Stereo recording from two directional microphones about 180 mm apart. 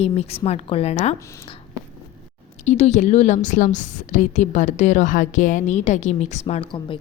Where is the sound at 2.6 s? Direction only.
40° left (ahead or behind).